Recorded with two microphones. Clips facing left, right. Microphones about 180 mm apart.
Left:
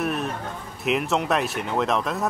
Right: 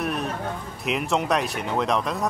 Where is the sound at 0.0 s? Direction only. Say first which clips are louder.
Left 1 dB; centre (ahead or behind).